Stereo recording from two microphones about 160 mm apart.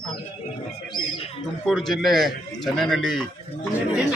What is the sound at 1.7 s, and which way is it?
A man's voice, centre (ahead or behind).